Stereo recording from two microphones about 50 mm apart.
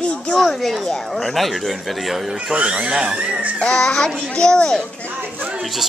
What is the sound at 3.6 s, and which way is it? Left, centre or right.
A child's voice, centre.